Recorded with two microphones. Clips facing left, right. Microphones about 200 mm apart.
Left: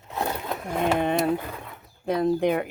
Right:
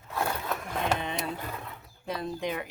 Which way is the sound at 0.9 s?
60° left (ahead or behind).